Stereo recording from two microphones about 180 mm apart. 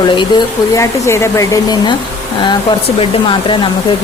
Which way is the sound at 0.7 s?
15° left (ahead or behind).